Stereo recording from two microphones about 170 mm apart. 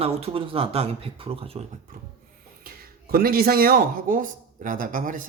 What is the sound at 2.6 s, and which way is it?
A man's voice, 60° right (ahead or behind).